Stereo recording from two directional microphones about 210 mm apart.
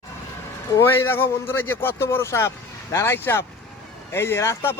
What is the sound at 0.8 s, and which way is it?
A man's voice, 10° left (ahead or behind).